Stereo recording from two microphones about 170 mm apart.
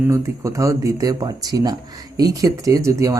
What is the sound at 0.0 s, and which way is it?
Speech, 15° right (ahead or behind).